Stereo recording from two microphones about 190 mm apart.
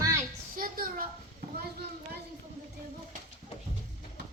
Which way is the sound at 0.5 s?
50° right (ahead or behind).